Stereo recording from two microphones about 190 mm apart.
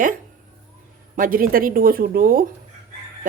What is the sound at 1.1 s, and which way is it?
Speech, 45° right (ahead or behind).